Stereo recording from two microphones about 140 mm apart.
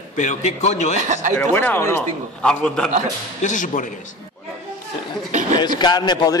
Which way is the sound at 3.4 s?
65° left (ahead or behind).